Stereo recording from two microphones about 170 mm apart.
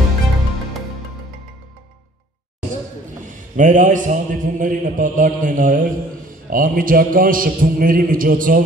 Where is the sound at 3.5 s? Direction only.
50° right (ahead or behind).